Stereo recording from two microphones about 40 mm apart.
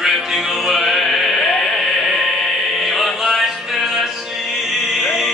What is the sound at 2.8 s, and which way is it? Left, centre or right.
Music, centre.